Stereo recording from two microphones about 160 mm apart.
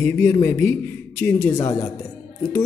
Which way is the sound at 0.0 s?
15° left (ahead or behind).